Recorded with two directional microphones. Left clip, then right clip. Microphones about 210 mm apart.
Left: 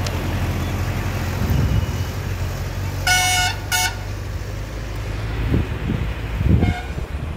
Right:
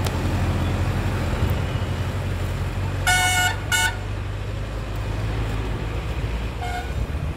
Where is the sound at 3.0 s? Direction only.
25° left (ahead or behind).